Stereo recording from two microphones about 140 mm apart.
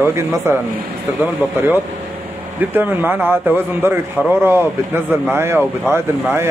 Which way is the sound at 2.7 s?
15° right (ahead or behind).